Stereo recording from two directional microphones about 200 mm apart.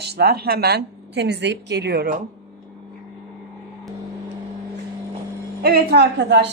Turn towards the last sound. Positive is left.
turn(degrees=-60)  # may be behind; listen again after turning